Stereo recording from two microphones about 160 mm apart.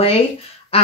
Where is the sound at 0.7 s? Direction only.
40° left (ahead or behind).